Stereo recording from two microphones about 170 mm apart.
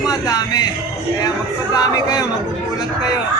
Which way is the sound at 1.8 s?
20° left (ahead or behind).